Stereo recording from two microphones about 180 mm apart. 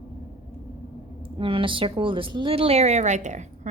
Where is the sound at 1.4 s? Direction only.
30° right (ahead or behind).